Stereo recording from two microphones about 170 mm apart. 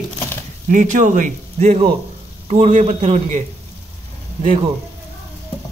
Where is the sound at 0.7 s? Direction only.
50° right (ahead or behind).